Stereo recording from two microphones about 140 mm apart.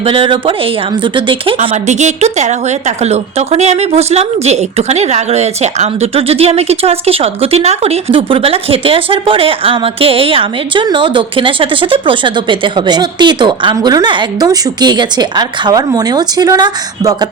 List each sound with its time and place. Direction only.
0.0 s a woman's voice: 40° right (ahead or behind)
1.5 s a woman's voice: 55° right (ahead or behind); by 17.2 s 30° right (ahead or behind)